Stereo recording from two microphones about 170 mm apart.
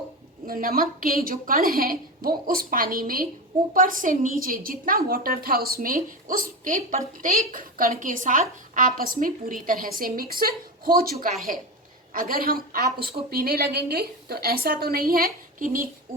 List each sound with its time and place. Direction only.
0.4 s a woman's voice: 55° right (ahead or behind)